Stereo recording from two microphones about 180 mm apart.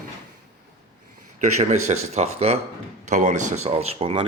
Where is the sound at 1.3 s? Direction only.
40° right (ahead or behind).